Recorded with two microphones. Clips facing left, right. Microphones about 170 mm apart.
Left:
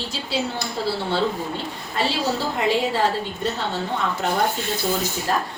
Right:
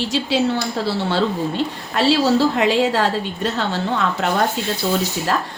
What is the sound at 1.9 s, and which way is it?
A woman's voice, 75° right (ahead or behind).